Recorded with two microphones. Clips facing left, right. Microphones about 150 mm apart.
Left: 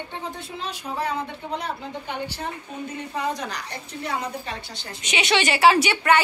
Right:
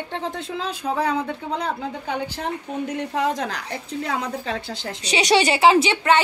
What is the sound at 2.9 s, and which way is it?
Speech, 75° right (ahead or behind).